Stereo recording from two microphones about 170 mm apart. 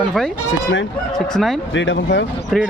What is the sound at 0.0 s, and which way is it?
Speech, centre (ahead or behind).